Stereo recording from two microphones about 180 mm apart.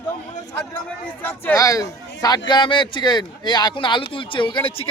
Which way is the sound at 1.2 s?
15° left (ahead or behind).